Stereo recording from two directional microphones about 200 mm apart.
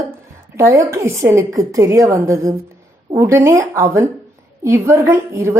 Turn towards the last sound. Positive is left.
turn(degrees=-15)  # may be behind; listen again after turning